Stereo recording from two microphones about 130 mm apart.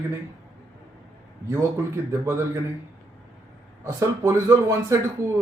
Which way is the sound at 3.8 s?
25° right (ahead or behind).